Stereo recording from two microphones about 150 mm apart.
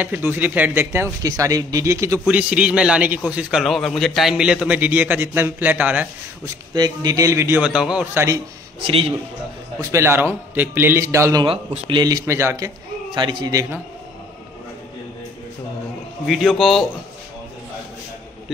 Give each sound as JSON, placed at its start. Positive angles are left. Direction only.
{"t": 0.0, "sound": "a man's voice", "side_deg": -10}
{"t": 2.2, "sound": "a man's voice", "side_deg": -5}
{"t": 6.4, "sound": "a man's voice", "side_deg": -25}
{"t": 7.6, "sound": "a man's voice", "side_deg": -5}
{"t": 9.8, "sound": "a man's voice", "side_deg": -20}
{"t": 11.4, "sound": "a man's voice", "side_deg": -35}
{"t": 16.3, "sound": "speech", "side_deg": 0}